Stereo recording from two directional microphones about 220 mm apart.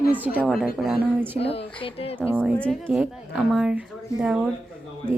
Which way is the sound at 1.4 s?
25° left (ahead or behind).